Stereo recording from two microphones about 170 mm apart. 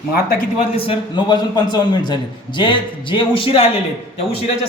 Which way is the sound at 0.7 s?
30° left (ahead or behind).